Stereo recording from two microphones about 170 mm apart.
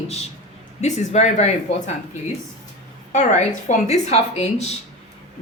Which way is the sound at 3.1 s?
45° left (ahead or behind).